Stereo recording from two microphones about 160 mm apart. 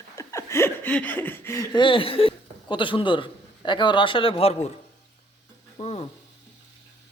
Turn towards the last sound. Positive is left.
turn(degrees=40)  # may be behind; listen again after turning